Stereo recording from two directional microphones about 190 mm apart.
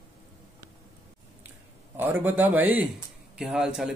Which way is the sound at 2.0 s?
10° right (ahead or behind).